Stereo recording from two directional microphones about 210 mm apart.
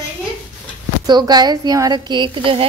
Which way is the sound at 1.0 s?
20° right (ahead or behind).